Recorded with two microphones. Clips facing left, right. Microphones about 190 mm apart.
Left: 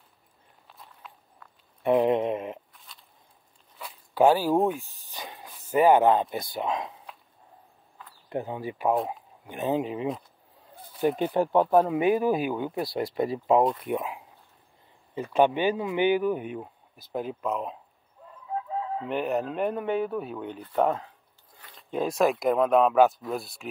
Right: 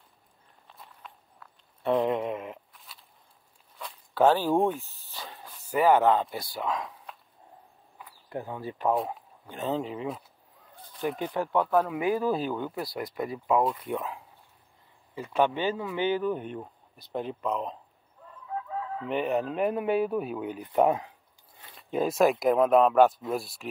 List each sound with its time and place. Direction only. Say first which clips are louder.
0.7 s walk: even; centre (ahead or behind)
1.8 s a sound: left 4 dB; 15° left (ahead or behind)
2.7 s a sound: even; centre (ahead or behind)
3.7 s speech: left 2 dB; 10° left (ahead or behind)
8.3 s speech: left 4 dB; 20° left (ahead or behind)
11.0 s speech: left 6 dB; 30° left (ahead or behind)
12.7 s speech: left 5 dB; 25° left (ahead or behind)
13.8 s speech: left 3 dB; 15° left (ahead or behind)
15.3 s speech: left 3 dB; 15° left (ahead or behind)
18.5 s chicken: left 3 dB; 25° left (ahead or behind)
19.0 s speech: right 1 dB; centre (ahead or behind)
21.7 s speech: right 1 dB; centre (ahead or behind)